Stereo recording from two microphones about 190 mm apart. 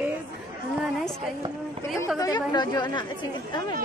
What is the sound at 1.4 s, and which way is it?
Speech, 25° right (ahead or behind).